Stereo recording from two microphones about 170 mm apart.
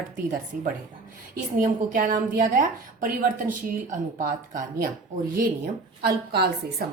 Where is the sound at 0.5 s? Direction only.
60° right (ahead or behind).